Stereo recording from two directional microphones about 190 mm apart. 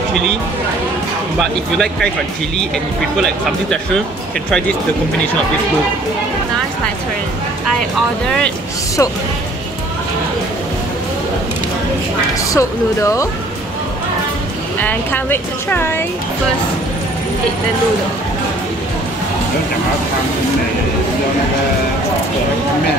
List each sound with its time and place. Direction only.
1.4 s speech: centre (ahead or behind)
12.5 s speech: 15° left (ahead or behind)
14.8 s speech: 10° left (ahead or behind)